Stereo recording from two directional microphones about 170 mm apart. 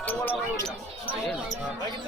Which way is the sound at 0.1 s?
10° left (ahead or behind).